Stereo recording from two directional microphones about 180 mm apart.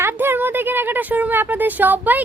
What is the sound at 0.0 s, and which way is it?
A woman's voice, 10° right (ahead or behind).